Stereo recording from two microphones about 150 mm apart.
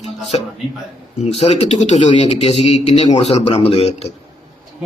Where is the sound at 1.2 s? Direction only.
45° left (ahead or behind).